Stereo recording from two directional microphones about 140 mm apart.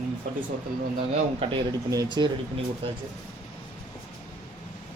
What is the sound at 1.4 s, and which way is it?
Speech, 35° right (ahead or behind).